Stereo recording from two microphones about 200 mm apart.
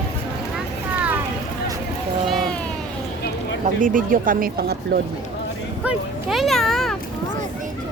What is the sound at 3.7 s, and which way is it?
Speech, 40° right (ahead or behind).